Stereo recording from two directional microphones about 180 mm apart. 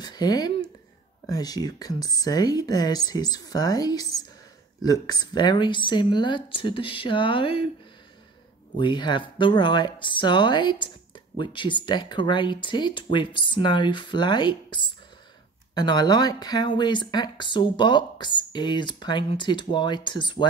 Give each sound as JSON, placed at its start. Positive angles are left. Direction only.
{"t": 0.0, "sound": "speech", "side_deg": 20}
{"t": 8.7, "sound": "speech", "side_deg": 25}